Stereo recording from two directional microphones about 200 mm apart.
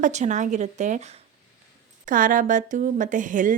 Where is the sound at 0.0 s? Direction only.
35° right (ahead or behind).